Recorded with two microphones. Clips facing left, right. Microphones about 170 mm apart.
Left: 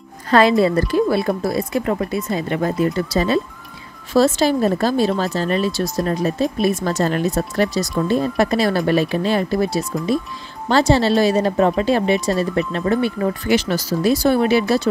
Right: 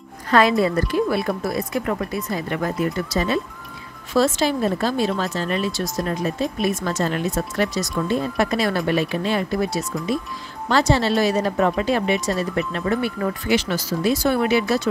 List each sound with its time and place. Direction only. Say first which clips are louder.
0.3 s speech: left 3 dB; 30° left (ahead or behind)
13.5 s speech: left 2 dB; 40° left (ahead or behind)